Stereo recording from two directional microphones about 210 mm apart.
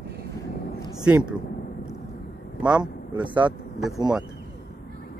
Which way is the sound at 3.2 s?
5° right (ahead or behind).